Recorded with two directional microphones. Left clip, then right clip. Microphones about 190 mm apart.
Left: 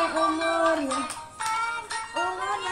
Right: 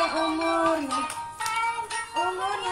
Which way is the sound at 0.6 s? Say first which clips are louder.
Even; centre (ahead or behind).